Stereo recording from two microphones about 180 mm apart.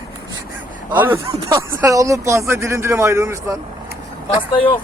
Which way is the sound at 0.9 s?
10° right (ahead or behind).